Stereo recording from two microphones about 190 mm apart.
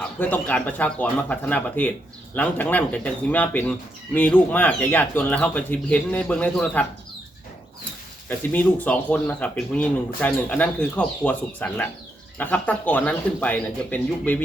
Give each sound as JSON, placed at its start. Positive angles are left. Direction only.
{"t": 0.0, "sound": "speech", "side_deg": 10}
{"t": 8.3, "sound": "speech", "side_deg": 10}